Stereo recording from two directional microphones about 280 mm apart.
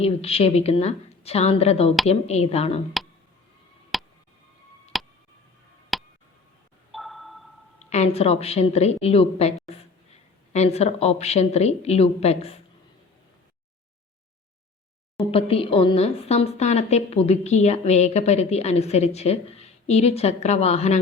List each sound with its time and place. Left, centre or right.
0.0 s a woman's voice: left
3.9 s tick: centre
6.9 s a sound: centre
7.9 s a woman's voice: left
15.2 s a woman's voice: centre